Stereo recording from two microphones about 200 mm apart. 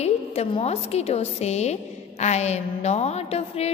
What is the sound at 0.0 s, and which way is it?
A woman's voice, 30° left (ahead or behind).